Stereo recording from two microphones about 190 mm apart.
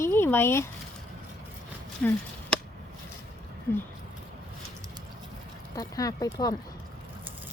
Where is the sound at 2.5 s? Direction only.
5° left (ahead or behind).